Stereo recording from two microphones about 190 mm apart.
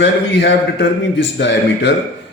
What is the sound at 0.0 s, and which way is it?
A man's voice, 70° left (ahead or behind).